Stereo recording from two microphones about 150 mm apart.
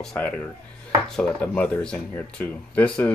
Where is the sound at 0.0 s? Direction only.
5° left (ahead or behind).